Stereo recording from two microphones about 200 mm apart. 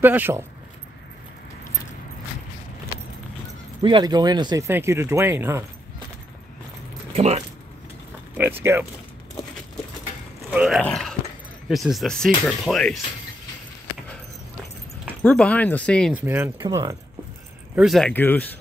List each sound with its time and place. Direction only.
0.0 s speech: 10° right (ahead or behind)
3.8 s speech: 20° right (ahead or behind)
7.1 s speech: 30° right (ahead or behind)
8.4 s speech: 10° right (ahead or behind)
10.5 s a sound: 5° right (ahead or behind)
11.7 s speech: centre (ahead or behind)
15.2 s speech: 5° left (ahead or behind)
16.1 s speech: 10° right (ahead or behind)
17.7 s speech: centre (ahead or behind)